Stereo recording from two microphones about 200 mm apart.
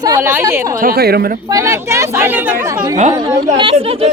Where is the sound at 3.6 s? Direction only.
25° right (ahead or behind).